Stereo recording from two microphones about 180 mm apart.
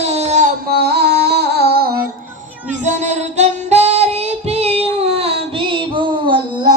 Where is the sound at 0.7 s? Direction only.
60° right (ahead or behind).